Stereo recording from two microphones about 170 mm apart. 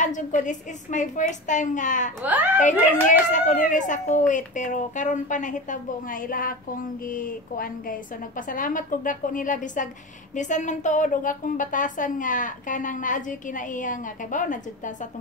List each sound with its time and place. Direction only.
0.0 s a woman's voice: 50° left (ahead or behind)
2.2 s a child's voice: 10° right (ahead or behind)
3.1 s a woman's voice: 50° left (ahead or behind)